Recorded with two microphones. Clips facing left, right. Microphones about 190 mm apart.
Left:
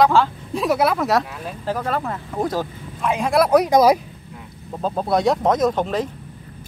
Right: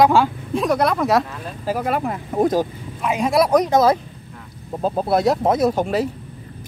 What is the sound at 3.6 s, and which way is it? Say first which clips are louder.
Speech: left 1 dB; 15° left (ahead or behind).